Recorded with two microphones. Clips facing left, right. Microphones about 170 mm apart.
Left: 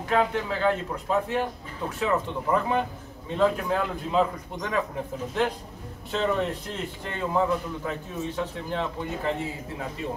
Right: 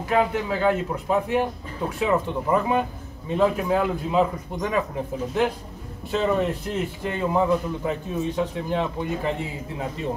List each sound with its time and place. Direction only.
0.1 s a man's voice: 10° right (ahead or behind)
6.1 s a man's voice: 5° right (ahead or behind)